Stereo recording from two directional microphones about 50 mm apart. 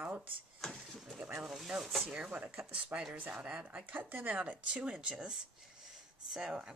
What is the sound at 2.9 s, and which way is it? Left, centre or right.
Speech, right.